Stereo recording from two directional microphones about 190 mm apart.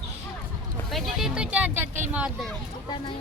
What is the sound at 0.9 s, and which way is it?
Speech, centre (ahead or behind).